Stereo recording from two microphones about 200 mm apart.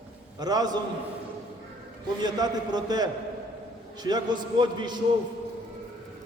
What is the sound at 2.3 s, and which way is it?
A man's voice, 20° right (ahead or behind).